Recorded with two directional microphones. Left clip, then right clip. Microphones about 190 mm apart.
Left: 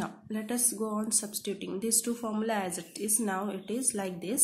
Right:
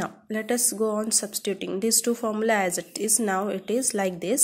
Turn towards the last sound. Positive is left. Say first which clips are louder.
# right 8 dB
turn(degrees=-35)  # may be behind; listen again after turning